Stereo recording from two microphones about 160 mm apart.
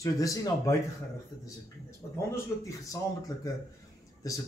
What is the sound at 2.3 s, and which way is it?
Speech, 20° left (ahead or behind).